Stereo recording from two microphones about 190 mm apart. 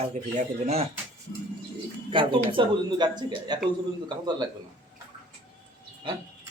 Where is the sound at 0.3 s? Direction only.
35° right (ahead or behind).